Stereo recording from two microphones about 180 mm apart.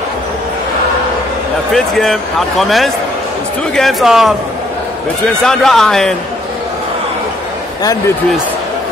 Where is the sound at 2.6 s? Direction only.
Centre (ahead or behind).